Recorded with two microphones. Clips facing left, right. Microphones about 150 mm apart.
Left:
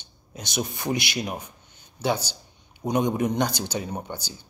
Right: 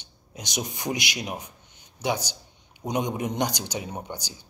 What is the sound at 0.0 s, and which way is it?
Speech, 15° right (ahead or behind).